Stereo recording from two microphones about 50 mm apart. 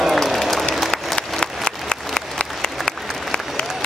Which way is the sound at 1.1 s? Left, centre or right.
Centre.